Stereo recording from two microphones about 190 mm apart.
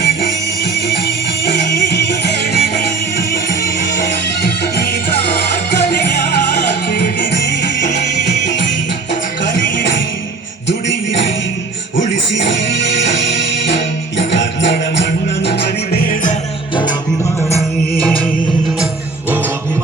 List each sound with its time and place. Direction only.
1.5 s music: 65° left (ahead or behind)
4.6 s music: 55° left (ahead or behind)
7.8 s music: 40° left (ahead or behind)
8.0 s music: 60° left (ahead or behind)
12.4 s music: 70° left (ahead or behind)
16.0 s music: 45° left (ahead or behind)